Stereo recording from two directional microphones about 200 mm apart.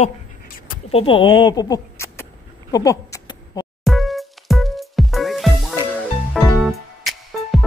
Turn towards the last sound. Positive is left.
turn(degrees=0)  # may be behind; listen again after turning